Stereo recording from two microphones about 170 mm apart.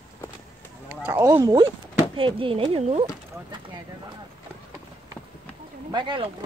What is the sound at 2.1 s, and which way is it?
Speech, 30° right (ahead or behind).